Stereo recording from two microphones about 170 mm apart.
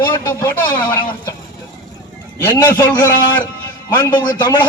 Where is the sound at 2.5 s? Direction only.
25° left (ahead or behind).